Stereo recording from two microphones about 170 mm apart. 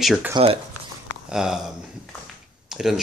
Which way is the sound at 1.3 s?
5° right (ahead or behind).